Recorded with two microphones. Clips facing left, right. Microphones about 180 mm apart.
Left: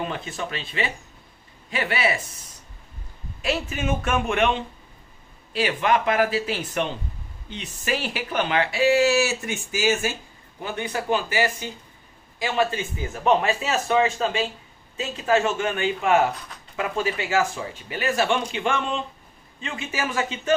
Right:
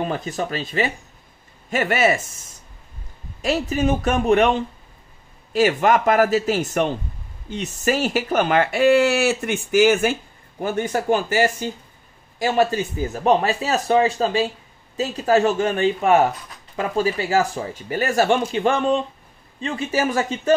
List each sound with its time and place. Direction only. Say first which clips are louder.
0.0 s speech: right 5 dB; 40° right (ahead or behind); by 10.1 s 60° right (ahead or behind)
10.6 s speech: right 6 dB; 45° right (ahead or behind)